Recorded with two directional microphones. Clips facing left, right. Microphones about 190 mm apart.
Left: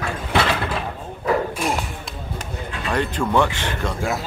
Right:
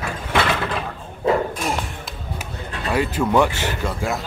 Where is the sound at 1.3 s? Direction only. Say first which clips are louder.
Right 2 dB; 25° right (ahead or behind).